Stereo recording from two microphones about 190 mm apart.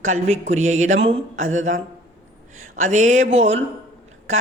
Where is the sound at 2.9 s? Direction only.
40° right (ahead or behind).